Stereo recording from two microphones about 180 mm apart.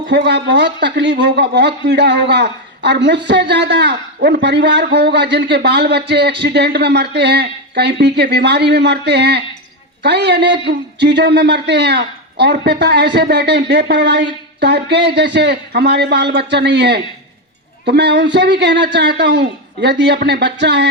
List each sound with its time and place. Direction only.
0.1 s speech: 70° right (ahead or behind)